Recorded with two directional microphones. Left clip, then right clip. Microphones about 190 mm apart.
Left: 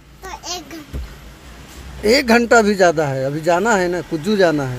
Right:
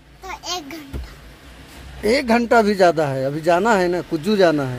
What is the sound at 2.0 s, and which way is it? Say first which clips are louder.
A man's voice: left 4 dB; 10° left (ahead or behind).